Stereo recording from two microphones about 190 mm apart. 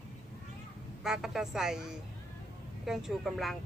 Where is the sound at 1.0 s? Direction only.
Centre (ahead or behind).